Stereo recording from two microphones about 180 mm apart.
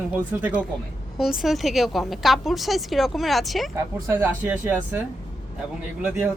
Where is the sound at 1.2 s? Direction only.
Centre (ahead or behind).